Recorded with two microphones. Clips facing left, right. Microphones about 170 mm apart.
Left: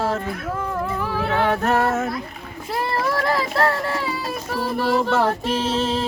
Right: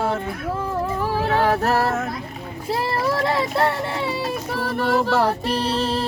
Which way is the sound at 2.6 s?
25° right (ahead or behind).